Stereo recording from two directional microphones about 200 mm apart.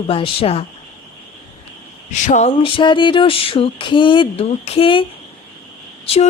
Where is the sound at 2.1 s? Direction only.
35° left (ahead or behind).